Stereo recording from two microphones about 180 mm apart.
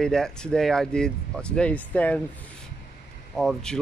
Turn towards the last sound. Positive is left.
turn(degrees=0)  # may be behind; listen again after turning